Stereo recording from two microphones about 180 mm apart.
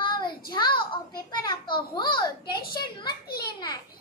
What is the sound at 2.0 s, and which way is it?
Speech, 25° left (ahead or behind).